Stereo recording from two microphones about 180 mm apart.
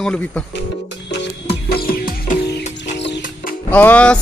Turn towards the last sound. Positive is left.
turn(degrees=5)  # may be behind; listen again after turning